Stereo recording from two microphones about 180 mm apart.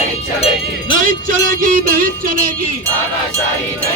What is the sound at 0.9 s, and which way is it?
Music, 50° right (ahead or behind).